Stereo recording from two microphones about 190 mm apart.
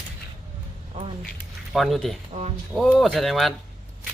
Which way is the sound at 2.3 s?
40° right (ahead or behind).